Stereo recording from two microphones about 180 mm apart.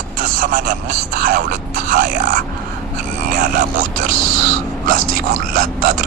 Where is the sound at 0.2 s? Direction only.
55° right (ahead or behind).